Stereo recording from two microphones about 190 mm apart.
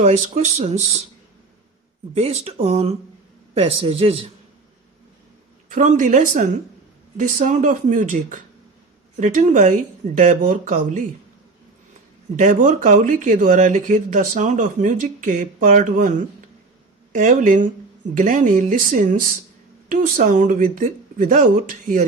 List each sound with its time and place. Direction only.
0.0 s speech: 35° right (ahead or behind)
2.1 s speech: 30° right (ahead or behind)
5.6 s speech: 45° right (ahead or behind)
12.4 s speech: 45° right (ahead or behind)